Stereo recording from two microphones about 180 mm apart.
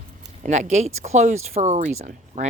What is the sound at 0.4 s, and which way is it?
Speech, 40° right (ahead or behind).